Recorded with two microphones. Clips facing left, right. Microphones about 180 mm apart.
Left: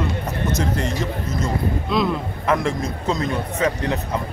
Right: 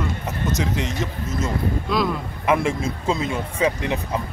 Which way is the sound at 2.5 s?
10° right (ahead or behind).